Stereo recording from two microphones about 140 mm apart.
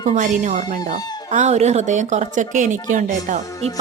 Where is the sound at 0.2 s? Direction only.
60° right (ahead or behind).